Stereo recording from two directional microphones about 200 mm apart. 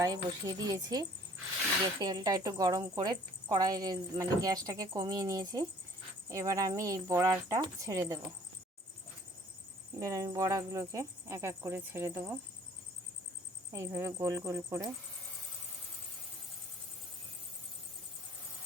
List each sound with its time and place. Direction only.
0.0 s a woman's voice: 20° right (ahead or behind)
10.0 s a woman's voice: 15° right (ahead or behind)
13.7 s a woman's voice: 15° right (ahead or behind)